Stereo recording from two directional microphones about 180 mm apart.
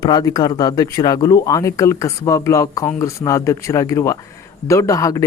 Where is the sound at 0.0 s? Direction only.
20° left (ahead or behind).